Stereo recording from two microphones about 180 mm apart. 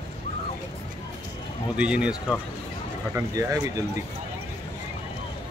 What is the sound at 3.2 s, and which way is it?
Speech, 15° right (ahead or behind).